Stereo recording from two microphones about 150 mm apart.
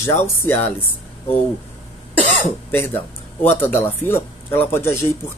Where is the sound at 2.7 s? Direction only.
15° left (ahead or behind).